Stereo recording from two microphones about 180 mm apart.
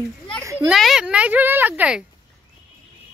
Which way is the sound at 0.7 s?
Centre (ahead or behind).